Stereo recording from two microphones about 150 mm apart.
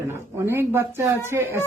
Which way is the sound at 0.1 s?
15° right (ahead or behind).